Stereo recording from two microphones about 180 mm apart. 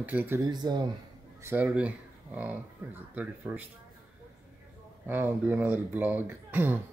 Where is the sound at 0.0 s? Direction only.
10° right (ahead or behind).